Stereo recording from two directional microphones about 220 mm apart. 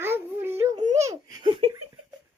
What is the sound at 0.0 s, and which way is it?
Music, 10° right (ahead or behind).